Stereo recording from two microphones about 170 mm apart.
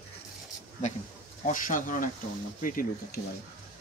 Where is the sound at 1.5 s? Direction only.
50° left (ahead or behind).